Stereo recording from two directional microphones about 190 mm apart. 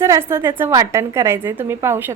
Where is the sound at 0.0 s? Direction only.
15° right (ahead or behind).